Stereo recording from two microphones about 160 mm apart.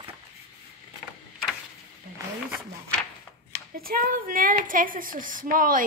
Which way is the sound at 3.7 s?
65° right (ahead or behind).